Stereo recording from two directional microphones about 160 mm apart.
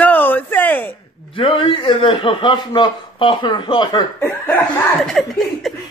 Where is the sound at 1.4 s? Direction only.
35° left (ahead or behind).